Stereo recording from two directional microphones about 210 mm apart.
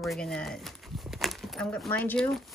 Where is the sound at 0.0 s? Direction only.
Centre (ahead or behind).